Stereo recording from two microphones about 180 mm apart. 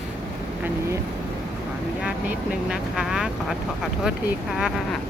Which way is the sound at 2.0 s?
5° right (ahead or behind).